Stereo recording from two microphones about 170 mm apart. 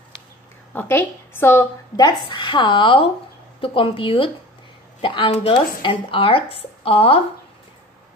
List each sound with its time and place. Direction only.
0.7 s a woman's voice: 10° left (ahead or behind); by 7.2 s 35° left (ahead or behind)